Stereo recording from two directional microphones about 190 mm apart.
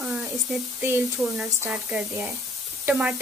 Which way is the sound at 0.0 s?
5° right (ahead or behind).